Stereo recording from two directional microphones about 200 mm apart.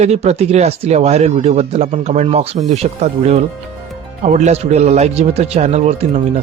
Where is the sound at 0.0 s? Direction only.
35° right (ahead or behind).